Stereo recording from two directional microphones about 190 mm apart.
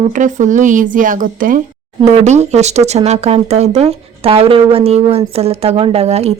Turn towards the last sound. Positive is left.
turn(degrees=-35)  # may be behind; listen again after turning